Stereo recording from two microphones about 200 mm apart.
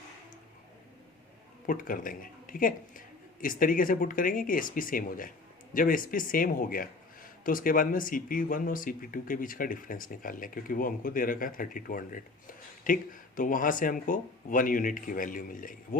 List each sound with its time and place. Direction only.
1.6 s speech: 45° left (ahead or behind)